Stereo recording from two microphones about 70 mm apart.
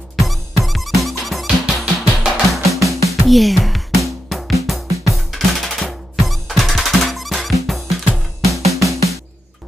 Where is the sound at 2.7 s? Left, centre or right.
Right.